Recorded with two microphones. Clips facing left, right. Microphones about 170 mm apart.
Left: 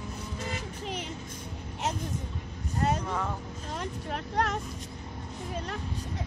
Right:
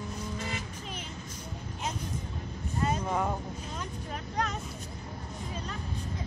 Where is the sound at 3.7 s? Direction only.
70° left (ahead or behind).